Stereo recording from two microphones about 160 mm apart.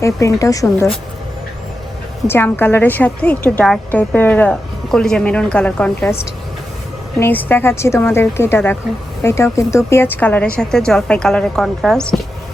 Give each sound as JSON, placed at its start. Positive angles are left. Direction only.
{"t": 0.0, "sound": "speech", "side_deg": 20}
{"t": 2.2, "sound": "a woman's voice", "side_deg": 15}